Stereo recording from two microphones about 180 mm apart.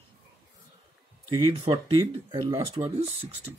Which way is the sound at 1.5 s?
35° right (ahead or behind).